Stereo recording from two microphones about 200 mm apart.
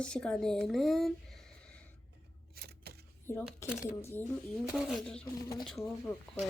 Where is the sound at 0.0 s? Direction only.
5° left (ahead or behind).